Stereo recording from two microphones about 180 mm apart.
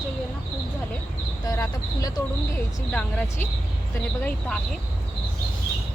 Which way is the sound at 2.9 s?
10° left (ahead or behind).